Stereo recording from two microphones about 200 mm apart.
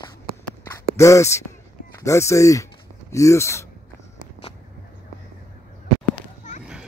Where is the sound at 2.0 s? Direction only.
15° left (ahead or behind).